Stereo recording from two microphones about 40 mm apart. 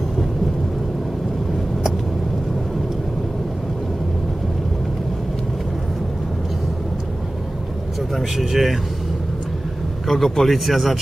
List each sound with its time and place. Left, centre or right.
8.2 s speech: centre
10.0 s speech: centre